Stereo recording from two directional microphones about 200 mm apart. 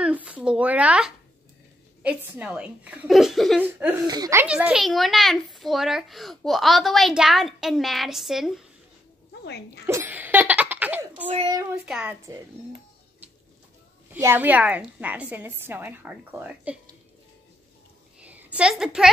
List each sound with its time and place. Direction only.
0.0 s a sound: 5° right (ahead or behind)
2.0 s a child's voice: 5° right (ahead or behind)
4.1 s a child's voice: 15° right (ahead or behind)
9.4 s speech: 55° left (ahead or behind)
9.8 s laughter: 10° right (ahead or behind)
11.2 s a child's voice: 25° right (ahead or behind)
11.7 s a child's voice: 5° right (ahead or behind)
14.1 s a woman's voice: 10° right (ahead or behind)
18.2 s a sound: 5° right (ahead or behind)